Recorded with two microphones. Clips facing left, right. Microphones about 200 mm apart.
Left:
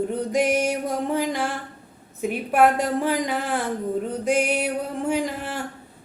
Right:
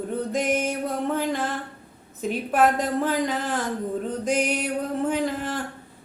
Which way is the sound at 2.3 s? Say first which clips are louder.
Left 2 dB; 60° left (ahead or behind).